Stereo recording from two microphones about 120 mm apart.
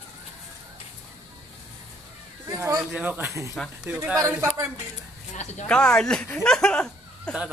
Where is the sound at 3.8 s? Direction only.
10° right (ahead or behind).